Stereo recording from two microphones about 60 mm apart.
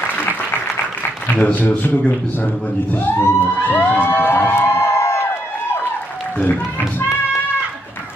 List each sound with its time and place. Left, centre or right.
1.4 s a man's voice: left
3.2 s a sound: left
3.6 s crowd: left
6.3 s speech: left